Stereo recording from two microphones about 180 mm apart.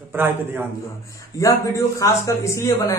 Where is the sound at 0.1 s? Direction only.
10° right (ahead or behind).